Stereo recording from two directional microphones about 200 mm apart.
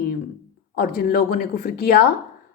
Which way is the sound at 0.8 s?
45° left (ahead or behind).